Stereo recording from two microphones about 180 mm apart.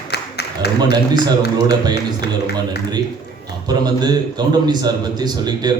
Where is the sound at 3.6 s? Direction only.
25° right (ahead or behind).